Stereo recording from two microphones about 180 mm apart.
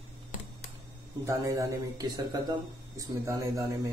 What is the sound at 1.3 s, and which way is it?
Speech, 20° right (ahead or behind).